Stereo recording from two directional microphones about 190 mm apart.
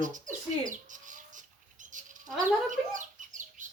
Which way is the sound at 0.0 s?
40° right (ahead or behind).